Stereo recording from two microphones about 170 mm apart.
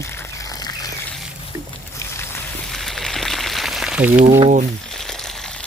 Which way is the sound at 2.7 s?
Centre (ahead or behind).